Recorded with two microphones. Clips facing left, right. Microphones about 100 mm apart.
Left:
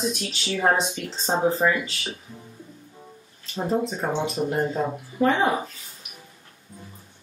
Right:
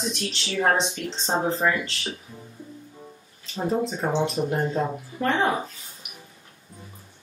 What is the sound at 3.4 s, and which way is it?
Speech, centre (ahead or behind).